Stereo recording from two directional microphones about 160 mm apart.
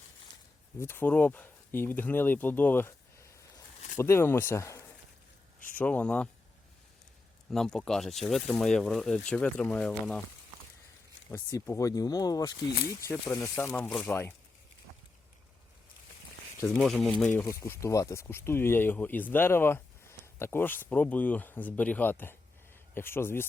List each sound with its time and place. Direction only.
0.8 s speech: 15° left (ahead or behind)
5.7 s speech: 10° left (ahead or behind)
7.5 s speech: 5° left (ahead or behind)
11.3 s speech: 15° left (ahead or behind)
16.6 s speech: centre (ahead or behind)